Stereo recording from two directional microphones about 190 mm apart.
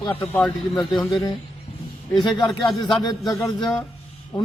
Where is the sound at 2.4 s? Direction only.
Centre (ahead or behind).